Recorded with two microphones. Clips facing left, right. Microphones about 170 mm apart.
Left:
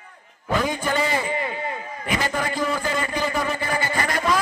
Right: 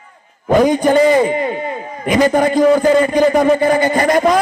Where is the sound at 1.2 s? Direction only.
20° right (ahead or behind).